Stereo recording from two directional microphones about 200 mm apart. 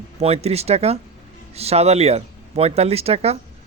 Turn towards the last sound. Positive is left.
turn(degrees=-30)  # may be behind; listen again after turning